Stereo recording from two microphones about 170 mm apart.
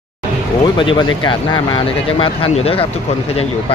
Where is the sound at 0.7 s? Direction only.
30° left (ahead or behind).